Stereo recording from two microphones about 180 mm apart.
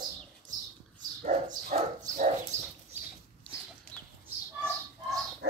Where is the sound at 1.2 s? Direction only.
50° right (ahead or behind).